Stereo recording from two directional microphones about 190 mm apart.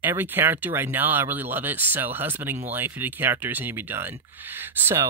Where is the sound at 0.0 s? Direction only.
10° right (ahead or behind).